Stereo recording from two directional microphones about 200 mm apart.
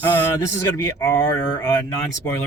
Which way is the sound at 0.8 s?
20° left (ahead or behind).